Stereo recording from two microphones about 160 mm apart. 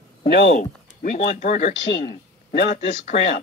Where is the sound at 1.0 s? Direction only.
50° left (ahead or behind).